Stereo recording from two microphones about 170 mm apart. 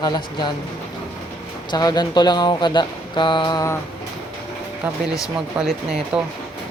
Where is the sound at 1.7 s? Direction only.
25° left (ahead or behind).